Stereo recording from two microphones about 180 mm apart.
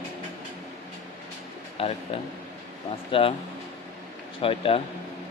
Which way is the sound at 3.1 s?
30° left (ahead or behind).